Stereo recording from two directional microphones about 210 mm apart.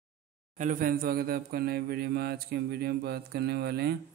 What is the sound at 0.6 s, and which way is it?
Speech, 40° right (ahead or behind).